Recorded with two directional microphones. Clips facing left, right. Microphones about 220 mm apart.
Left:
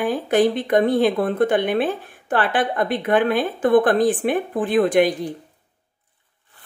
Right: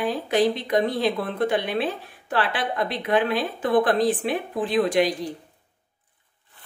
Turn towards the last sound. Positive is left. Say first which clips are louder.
# left 4 dB
turn(degrees=55)  # may be behind; listen again after turning